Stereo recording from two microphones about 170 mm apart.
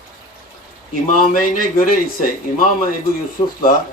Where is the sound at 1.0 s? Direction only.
55° left (ahead or behind).